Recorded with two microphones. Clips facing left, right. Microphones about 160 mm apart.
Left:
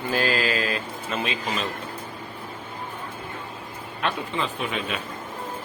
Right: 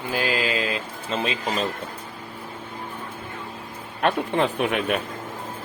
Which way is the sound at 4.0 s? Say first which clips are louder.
Right 6 dB; 55° right (ahead or behind).